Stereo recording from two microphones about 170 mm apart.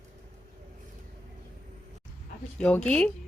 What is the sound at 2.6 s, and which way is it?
Speech, 5° left (ahead or behind).